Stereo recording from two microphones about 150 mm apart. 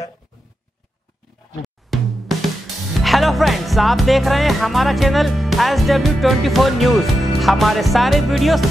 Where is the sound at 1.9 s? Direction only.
Centre (ahead or behind).